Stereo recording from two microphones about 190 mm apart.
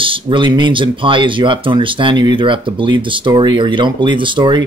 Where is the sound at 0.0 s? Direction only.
25° right (ahead or behind).